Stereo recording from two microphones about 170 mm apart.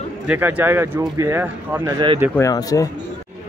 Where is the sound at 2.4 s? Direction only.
20° left (ahead or behind).